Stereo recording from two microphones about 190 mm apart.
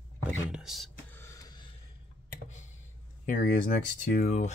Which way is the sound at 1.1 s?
15° left (ahead or behind).